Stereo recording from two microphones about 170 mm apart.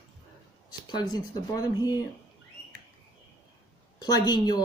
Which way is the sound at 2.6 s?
10° left (ahead or behind).